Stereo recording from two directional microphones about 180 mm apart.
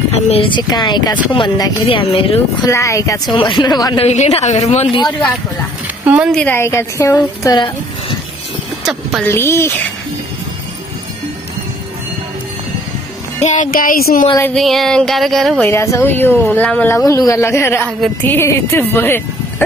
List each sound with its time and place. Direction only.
0.1 s speech: 30° left (ahead or behind)
2.7 s speech: 15° left (ahead or behind)
4.0 s a woman's voice: 40° left (ahead or behind)
6.0 s speech: 10° right (ahead or behind)
6.3 s speech: 10° left (ahead or behind)
9.2 s speech: 15° left (ahead or behind)
13.4 s speech: 45° left (ahead or behind)
14.4 s a sound: 5° left (ahead or behind)
15.7 s speech: 15° left (ahead or behind)